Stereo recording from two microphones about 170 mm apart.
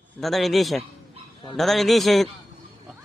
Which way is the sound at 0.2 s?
Centre (ahead or behind).